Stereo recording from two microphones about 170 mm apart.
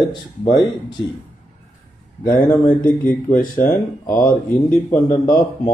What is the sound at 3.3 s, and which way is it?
Speech, 50° left (ahead or behind).